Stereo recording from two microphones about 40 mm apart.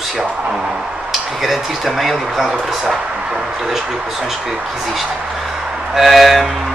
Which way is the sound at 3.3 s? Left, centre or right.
Centre.